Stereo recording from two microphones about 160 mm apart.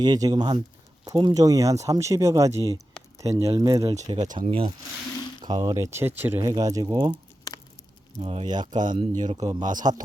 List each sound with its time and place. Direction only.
0.0 s speech: 25° right (ahead or behind)
4.4 s speech: 35° right (ahead or behind)
8.2 s speech: 35° right (ahead or behind)